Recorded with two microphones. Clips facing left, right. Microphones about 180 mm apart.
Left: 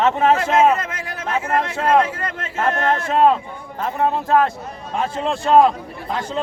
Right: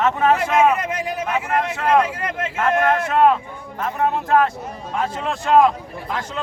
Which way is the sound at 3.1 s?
30° left (ahead or behind).